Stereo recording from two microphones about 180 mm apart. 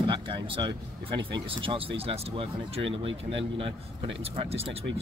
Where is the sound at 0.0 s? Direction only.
30° right (ahead or behind).